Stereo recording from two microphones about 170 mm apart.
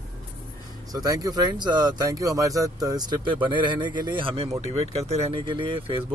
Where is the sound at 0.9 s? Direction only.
20° right (ahead or behind).